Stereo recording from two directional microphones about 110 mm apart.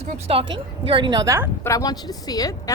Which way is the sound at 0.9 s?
50° right (ahead or behind).